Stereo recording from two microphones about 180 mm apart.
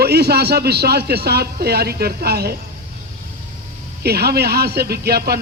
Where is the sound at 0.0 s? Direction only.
65° right (ahead or behind).